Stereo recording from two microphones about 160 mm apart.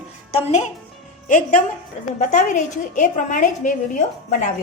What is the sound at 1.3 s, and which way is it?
A woman's voice, 55° left (ahead or behind).